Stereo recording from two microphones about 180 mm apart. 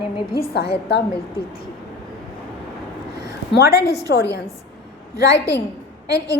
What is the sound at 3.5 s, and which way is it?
A woman's voice, 65° left (ahead or behind).